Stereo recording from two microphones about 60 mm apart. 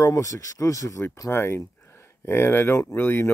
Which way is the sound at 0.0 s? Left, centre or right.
Left.